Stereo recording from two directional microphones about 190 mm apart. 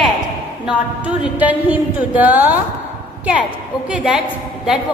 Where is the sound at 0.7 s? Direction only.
5° right (ahead or behind).